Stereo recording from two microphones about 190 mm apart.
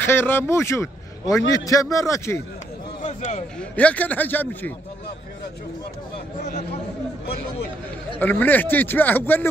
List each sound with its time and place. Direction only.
0.0 s a man's voice: 10° left (ahead or behind)
3.0 s speech: 40° left (ahead or behind)
3.5 s speech: 5° left (ahead or behind)
8.2 s speech: 10° left (ahead or behind)